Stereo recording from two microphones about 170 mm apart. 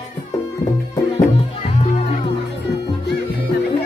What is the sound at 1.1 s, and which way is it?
Music, 35° left (ahead or behind).